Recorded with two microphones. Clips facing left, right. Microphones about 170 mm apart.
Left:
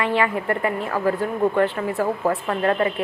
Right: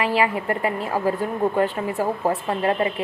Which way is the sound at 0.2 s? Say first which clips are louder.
Even; 20° right (ahead or behind).